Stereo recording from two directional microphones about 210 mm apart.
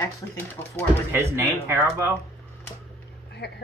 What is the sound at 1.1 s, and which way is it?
Speech, 10° right (ahead or behind).